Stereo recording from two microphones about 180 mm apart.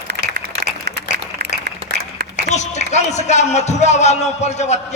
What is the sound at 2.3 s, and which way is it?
A man's voice, 40° left (ahead or behind).